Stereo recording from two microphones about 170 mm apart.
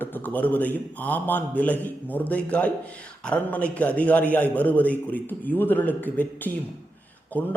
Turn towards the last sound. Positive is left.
turn(degrees=10)  # may be behind; listen again after turning